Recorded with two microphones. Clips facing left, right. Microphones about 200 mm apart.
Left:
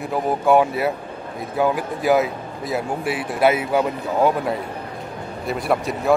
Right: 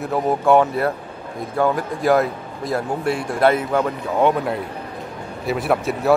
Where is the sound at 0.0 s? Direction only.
Centre (ahead or behind).